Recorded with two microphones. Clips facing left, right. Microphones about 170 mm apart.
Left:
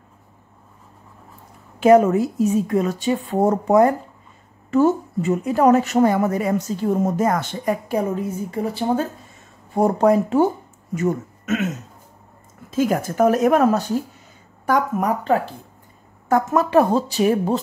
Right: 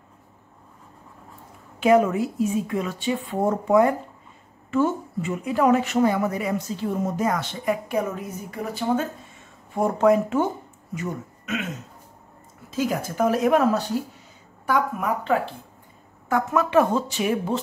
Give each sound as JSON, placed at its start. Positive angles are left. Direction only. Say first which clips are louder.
{"t": 1.8, "sound": "a woman's voice", "louder": "left 5 dB", "side_deg": 40}
{"t": 11.0, "sound": "speech", "louder": "left 9 dB", "side_deg": 45}
{"t": 12.7, "sound": "a woman's voice", "louder": "left 5 dB", "side_deg": 50}